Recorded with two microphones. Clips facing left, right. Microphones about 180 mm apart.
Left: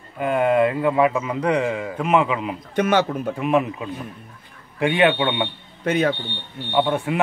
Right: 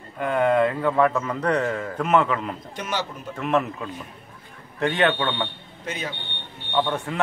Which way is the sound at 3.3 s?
15° left (ahead or behind).